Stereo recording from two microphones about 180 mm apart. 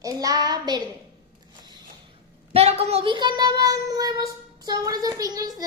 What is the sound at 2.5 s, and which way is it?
Speech, 35° right (ahead or behind).